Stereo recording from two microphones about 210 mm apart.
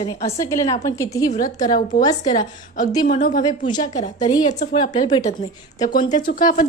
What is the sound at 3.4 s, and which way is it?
Speech, 20° left (ahead or behind).